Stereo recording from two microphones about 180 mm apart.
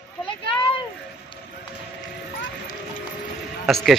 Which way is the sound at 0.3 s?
30° left (ahead or behind).